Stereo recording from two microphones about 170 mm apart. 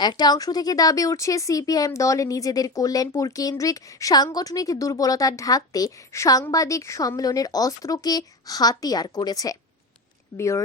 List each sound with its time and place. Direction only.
0.0 s speech: 25° left (ahead or behind)